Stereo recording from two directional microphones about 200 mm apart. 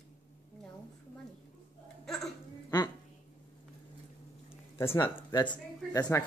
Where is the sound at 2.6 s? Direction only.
20° left (ahead or behind).